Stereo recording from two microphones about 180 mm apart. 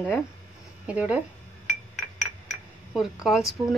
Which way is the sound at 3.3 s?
Centre (ahead or behind).